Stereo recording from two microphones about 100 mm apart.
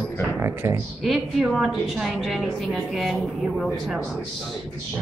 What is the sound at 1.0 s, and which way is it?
A woman's voice, centre (ahead or behind).